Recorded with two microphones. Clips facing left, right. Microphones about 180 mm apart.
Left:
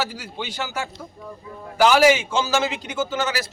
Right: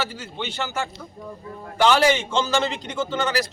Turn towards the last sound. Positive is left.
turn(degrees=5)  # may be behind; listen again after turning